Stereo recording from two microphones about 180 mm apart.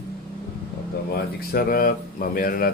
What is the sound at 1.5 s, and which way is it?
Speech, 55° left (ahead or behind).